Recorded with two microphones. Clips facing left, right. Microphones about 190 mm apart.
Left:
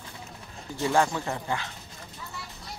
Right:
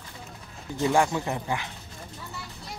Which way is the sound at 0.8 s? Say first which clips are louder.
Right 1 dB; 15° right (ahead or behind).